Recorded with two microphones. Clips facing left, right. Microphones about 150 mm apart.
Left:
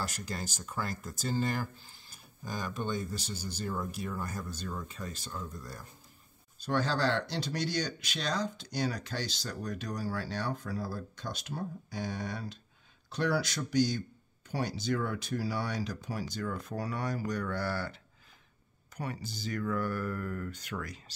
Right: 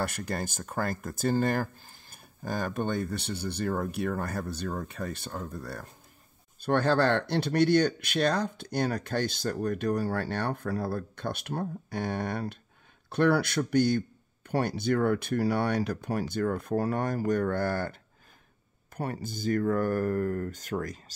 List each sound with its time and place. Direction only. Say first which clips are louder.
0.0 s speech: right 6 dB; 55° right (ahead or behind)
18.9 s speech: right 5 dB; 50° right (ahead or behind)